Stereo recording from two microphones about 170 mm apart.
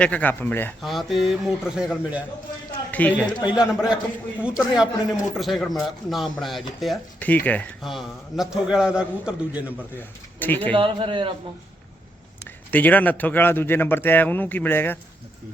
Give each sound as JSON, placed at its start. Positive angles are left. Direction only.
{"t": 0.0, "sound": "speech", "side_deg": 10}
{"t": 0.8, "sound": "speech", "side_deg": 0}
{"t": 2.9, "sound": "speech", "side_deg": 10}
{"t": 3.5, "sound": "speech", "side_deg": -5}
{"t": 10.4, "sound": "speech", "side_deg": 10}
{"t": 10.8, "sound": "a man's voice", "side_deg": -30}
{"t": 12.7, "sound": "speech", "side_deg": 10}